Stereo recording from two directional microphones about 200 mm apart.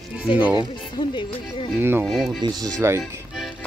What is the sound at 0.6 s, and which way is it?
Speech, 25° left (ahead or behind).